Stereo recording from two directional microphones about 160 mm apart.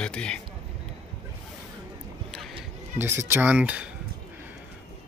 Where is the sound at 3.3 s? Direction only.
10° right (ahead or behind).